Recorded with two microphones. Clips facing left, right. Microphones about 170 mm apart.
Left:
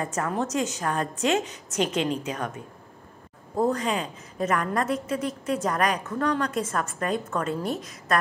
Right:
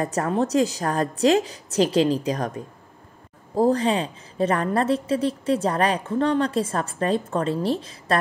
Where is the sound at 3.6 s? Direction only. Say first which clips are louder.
Right 5 dB; 30° right (ahead or behind).